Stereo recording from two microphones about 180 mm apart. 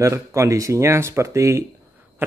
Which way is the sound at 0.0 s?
15° right (ahead or behind).